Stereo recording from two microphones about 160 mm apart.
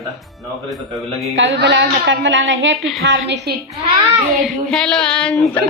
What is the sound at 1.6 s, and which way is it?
Speech, 90° right.